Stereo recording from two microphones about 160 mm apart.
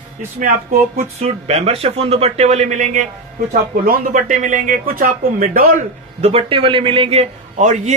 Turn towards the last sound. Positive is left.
turn(degrees=-45)  # may be behind; listen again after turning